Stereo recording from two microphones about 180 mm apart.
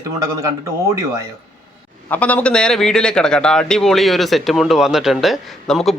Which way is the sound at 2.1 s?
10° left (ahead or behind).